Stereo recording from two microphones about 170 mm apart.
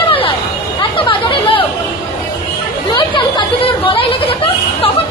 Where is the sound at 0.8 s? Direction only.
30° left (ahead or behind).